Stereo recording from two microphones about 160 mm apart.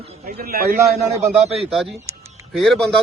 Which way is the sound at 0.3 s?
65° right (ahead or behind).